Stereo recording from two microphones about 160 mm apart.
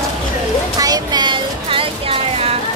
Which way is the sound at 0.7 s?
25° right (ahead or behind).